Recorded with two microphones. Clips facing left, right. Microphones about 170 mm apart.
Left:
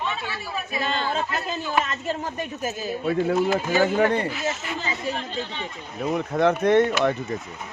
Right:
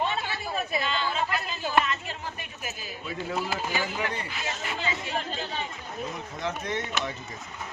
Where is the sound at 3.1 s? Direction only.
60° left (ahead or behind); by 5.1 s 40° left (ahead or behind).